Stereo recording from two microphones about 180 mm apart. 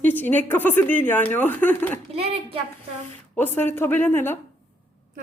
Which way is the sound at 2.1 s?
35° right (ahead or behind).